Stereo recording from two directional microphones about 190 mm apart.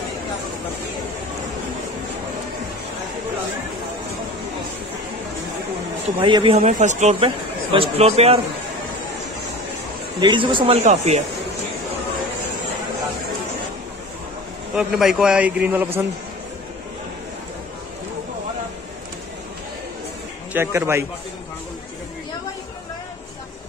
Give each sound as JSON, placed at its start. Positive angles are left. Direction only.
{"t": 6.2, "sound": "a man's voice", "side_deg": -25}
{"t": 10.2, "sound": "a man's voice", "side_deg": -25}
{"t": 14.8, "sound": "a man's voice", "side_deg": 0}
{"t": 20.5, "sound": "a man's voice", "side_deg": -15}